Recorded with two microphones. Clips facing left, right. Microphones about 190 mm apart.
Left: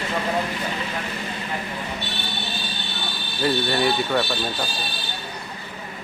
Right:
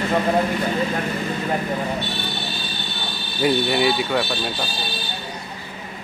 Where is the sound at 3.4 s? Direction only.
10° right (ahead or behind).